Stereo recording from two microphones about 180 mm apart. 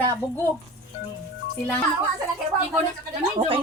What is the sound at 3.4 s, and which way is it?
Speech, 30° right (ahead or behind).